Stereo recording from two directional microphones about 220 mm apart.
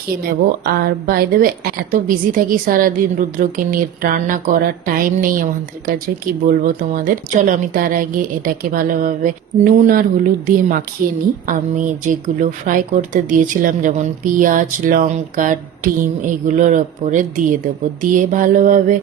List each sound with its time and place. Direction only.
0.3 s a woman's voice: 40° right (ahead or behind)
6.5 s a woman's voice: 40° right (ahead or behind)